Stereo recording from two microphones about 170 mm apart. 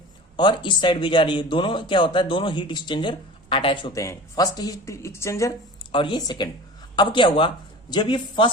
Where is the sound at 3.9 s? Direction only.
20° left (ahead or behind).